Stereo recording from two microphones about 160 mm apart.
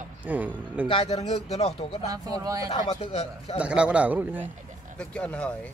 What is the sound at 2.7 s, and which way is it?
Speech, 35° left (ahead or behind).